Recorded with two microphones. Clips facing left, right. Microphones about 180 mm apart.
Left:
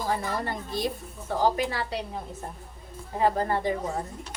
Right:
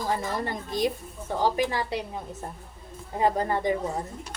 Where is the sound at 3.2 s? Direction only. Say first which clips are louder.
Even; 20° right (ahead or behind).